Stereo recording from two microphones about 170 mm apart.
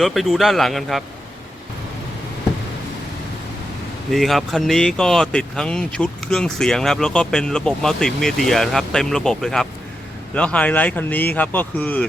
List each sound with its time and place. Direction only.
0.0 s speech: centre (ahead or behind)
4.1 s speech: centre (ahead or behind)